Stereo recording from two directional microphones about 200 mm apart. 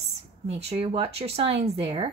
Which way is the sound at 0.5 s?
30° right (ahead or behind).